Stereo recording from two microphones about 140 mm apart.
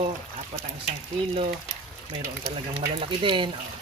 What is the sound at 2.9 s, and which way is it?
Speech, 35° right (ahead or behind).